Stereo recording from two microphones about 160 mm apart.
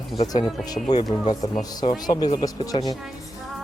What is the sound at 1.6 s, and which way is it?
Speech, 25° left (ahead or behind).